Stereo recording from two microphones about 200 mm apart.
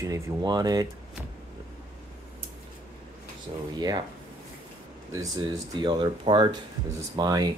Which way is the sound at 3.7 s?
20° right (ahead or behind).